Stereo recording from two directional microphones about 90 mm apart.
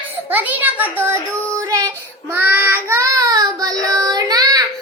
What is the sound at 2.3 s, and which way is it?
Child singing, 20° right (ahead or behind).